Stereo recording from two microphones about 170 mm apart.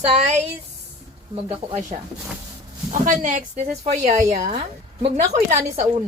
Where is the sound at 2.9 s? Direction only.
50° right (ahead or behind).